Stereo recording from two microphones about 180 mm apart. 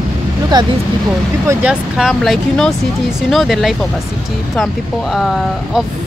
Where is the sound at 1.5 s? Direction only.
5° right (ahead or behind).